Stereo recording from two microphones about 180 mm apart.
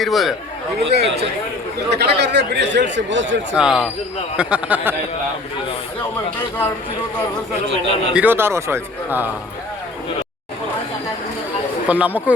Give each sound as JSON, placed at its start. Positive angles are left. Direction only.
{"t": 0.0, "sound": "speech", "side_deg": 0}
{"t": 0.9, "sound": "a man's voice", "side_deg": -65}
{"t": 3.5, "sound": "a man's voice", "side_deg": -5}
{"t": 8.1, "sound": "a man's voice", "side_deg": -10}
{"t": 11.9, "sound": "a man's voice", "side_deg": -10}